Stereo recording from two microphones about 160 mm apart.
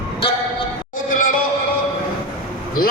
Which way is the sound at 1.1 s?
55° left (ahead or behind).